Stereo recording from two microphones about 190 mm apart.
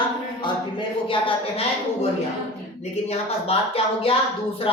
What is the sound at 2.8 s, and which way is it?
Speech, 35° left (ahead or behind).